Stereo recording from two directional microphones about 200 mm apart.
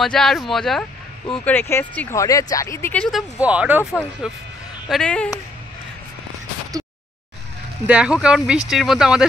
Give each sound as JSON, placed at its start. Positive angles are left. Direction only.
{"t": 0.0, "sound": "speech", "side_deg": 0}
{"t": 7.8, "sound": "speech", "side_deg": -5}